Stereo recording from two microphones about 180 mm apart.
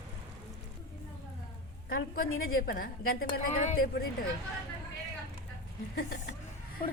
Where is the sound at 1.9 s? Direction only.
55° left (ahead or behind).